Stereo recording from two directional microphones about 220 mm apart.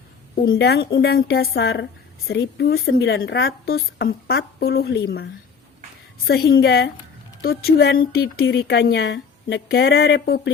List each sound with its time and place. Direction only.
0.4 s a woman's voice: 45° left (ahead or behind)